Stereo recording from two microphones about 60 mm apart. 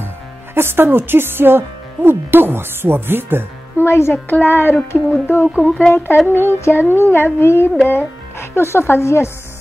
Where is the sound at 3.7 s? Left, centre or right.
Left.